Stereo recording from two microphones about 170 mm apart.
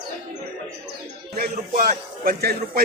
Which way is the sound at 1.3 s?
60° right (ahead or behind).